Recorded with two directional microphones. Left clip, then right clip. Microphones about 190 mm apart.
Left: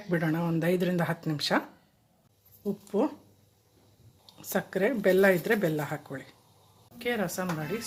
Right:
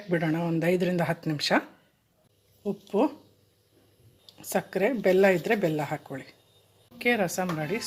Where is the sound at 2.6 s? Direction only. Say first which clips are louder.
Right 3 dB; 15° right (ahead or behind).